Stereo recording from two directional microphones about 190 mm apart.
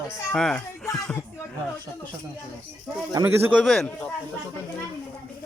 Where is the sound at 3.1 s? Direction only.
15° right (ahead or behind).